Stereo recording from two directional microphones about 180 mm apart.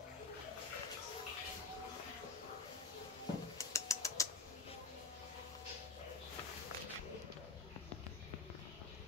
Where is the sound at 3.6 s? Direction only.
15° left (ahead or behind).